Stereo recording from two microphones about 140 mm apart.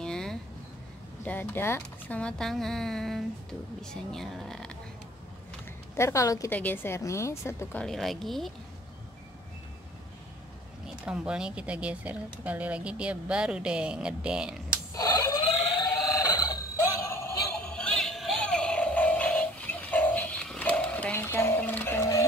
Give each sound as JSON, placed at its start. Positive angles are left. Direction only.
{"t": 0.0, "sound": "a sound", "side_deg": 5}
{"t": 1.2, "sound": "speech", "side_deg": 15}
{"t": 5.9, "sound": "a woman's voice", "side_deg": 20}
{"t": 7.8, "sound": "speech", "side_deg": 0}
{"t": 11.1, "sound": "speech", "side_deg": -5}
{"t": 15.0, "sound": "alarm clock", "side_deg": 25}
{"t": 17.0, "sound": "synthetic singing", "side_deg": 20}
{"t": 17.6, "sound": "synthetic singing", "side_deg": 5}